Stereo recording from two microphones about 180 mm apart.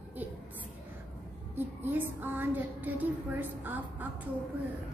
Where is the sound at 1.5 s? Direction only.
10° right (ahead or behind).